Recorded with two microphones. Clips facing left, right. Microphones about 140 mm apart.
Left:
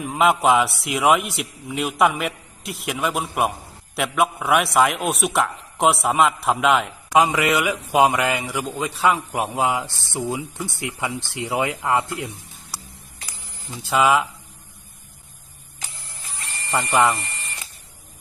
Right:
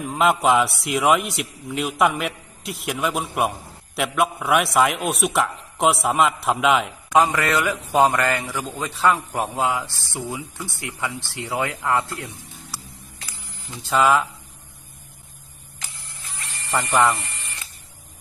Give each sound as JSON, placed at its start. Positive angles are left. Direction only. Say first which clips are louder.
{"t": 0.0, "sound": "a man's voice", "louder": "left 1 dB", "side_deg": 0}
{"t": 7.1, "sound": "a man's voice", "louder": "left 1 dB", "side_deg": 10}
{"t": 13.9, "sound": "a man's voice", "louder": "even", "side_deg": 10}
{"t": 16.7, "sound": "a man's voice", "louder": "even", "side_deg": 0}